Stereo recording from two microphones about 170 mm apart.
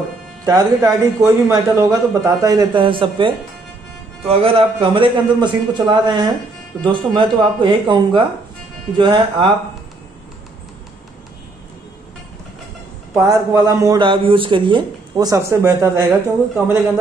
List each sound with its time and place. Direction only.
0.5 s a man's voice: 20° right (ahead or behind)
13.2 s speech: 20° right (ahead or behind)